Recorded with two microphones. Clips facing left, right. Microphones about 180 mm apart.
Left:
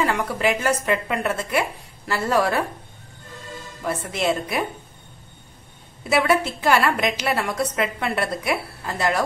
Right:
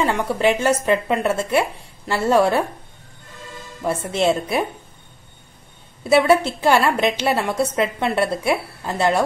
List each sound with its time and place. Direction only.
0.0 s a woman's voice: 25° right (ahead or behind)
3.8 s a woman's voice: 30° right (ahead or behind)
6.0 s a woman's voice: 30° right (ahead or behind)